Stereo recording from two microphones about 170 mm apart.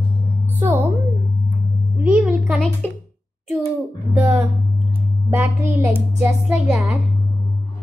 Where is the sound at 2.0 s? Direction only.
5° right (ahead or behind).